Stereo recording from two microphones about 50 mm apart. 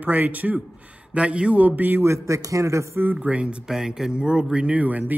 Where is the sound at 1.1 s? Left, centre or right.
Right.